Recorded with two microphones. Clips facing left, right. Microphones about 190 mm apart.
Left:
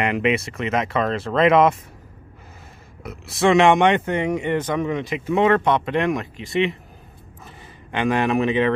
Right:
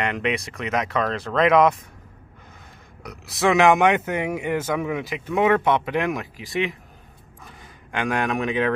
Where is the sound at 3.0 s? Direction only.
Centre (ahead or behind).